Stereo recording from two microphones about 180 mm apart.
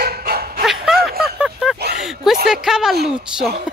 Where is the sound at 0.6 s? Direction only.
5° right (ahead or behind).